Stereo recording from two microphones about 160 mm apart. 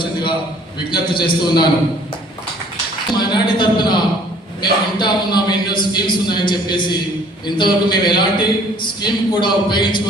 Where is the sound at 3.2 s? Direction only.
30° left (ahead or behind).